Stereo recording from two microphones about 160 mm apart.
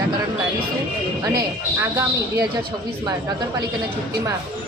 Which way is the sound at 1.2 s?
20° right (ahead or behind).